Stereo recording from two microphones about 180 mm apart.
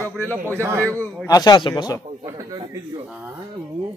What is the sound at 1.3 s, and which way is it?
Speech, 20° left (ahead or behind).